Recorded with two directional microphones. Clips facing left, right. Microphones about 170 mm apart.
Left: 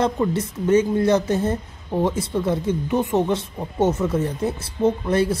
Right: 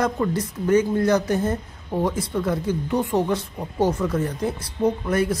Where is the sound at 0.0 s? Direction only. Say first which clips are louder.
Left 2 dB; 25° left (ahead or behind).